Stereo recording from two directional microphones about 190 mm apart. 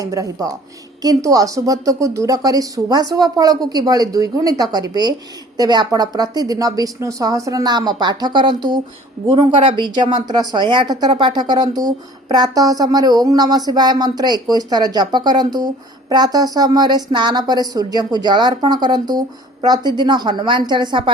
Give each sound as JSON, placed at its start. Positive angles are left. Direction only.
{"t": 0.0, "sound": "speech", "side_deg": -15}